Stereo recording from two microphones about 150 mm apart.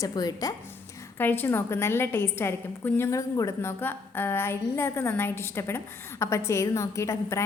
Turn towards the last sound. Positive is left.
turn(degrees=20)  # may be behind; listen again after turning